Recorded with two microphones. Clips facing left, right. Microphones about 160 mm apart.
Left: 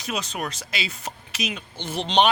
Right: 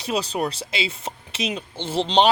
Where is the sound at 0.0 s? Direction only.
30° right (ahead or behind).